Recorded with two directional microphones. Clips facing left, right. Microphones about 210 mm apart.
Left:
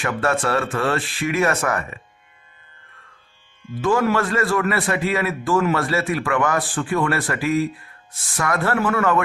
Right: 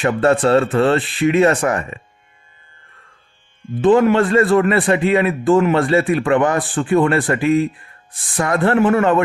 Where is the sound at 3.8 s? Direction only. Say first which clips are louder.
Right 7 dB; 20° right (ahead or behind).